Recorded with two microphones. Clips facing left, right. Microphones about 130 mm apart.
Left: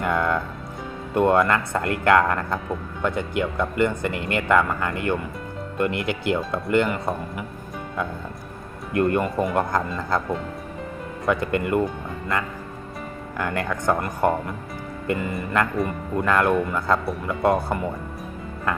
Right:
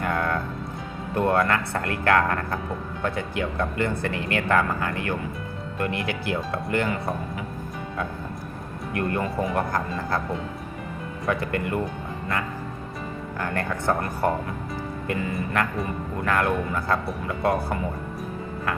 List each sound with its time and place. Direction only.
0.0 s speech: 20° left (ahead or behind)
8.9 s speech: 20° left (ahead or behind)
11.3 s speech: 20° left (ahead or behind)
13.4 s speech: 20° left (ahead or behind)